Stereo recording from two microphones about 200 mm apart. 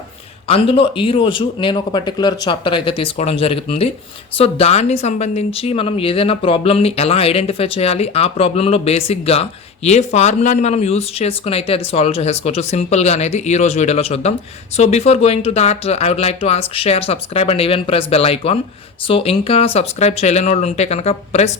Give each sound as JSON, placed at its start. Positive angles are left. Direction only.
{"t": 0.4, "sound": "a woman's voice", "side_deg": 25}